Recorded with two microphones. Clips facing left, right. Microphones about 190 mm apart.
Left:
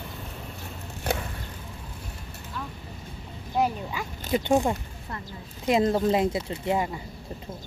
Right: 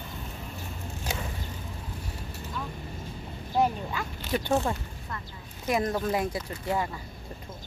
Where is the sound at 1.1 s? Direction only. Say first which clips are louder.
Left 7 dB; 60° left (ahead or behind).